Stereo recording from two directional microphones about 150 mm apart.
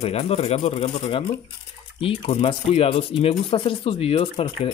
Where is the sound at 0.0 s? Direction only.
45° left (ahead or behind).